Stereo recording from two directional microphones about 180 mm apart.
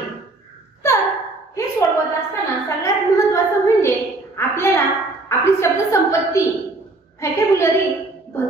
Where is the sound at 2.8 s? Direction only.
15° left (ahead or behind).